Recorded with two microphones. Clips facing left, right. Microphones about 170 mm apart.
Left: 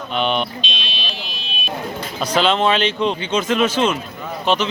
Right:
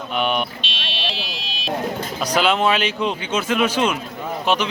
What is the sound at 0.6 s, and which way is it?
Buzzer, 70° right (ahead or behind).